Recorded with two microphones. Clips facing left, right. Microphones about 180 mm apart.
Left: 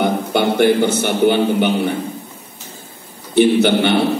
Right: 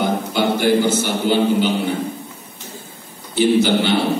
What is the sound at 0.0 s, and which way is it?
A man's voice, 60° left (ahead or behind).